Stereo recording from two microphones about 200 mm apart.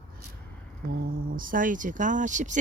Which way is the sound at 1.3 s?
45° right (ahead or behind).